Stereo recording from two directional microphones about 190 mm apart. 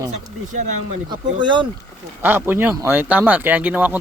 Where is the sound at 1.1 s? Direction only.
25° right (ahead or behind).